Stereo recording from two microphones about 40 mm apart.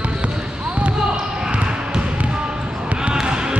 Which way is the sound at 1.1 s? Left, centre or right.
Right.